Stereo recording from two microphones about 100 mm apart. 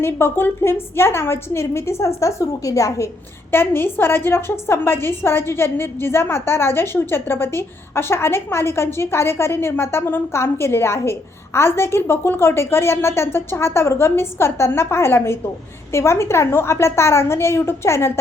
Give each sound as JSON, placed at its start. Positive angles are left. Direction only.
{"t": 0.0, "sound": "a woman's voice", "side_deg": 25}
{"t": 3.5, "sound": "a woman's voice", "side_deg": 20}